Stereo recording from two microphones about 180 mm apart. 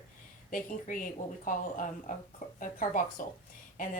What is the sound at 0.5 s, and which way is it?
A woman's voice, 50° left (ahead or behind).